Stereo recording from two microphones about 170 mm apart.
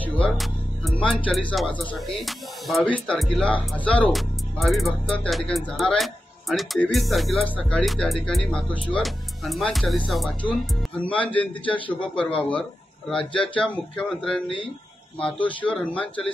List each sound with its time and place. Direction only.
0.0 s a man's voice: 5° left (ahead or behind)
13.2 s speech: 30° left (ahead or behind)
13.6 s speech: 5° left (ahead or behind)
15.4 s a man's voice: 5° left (ahead or behind)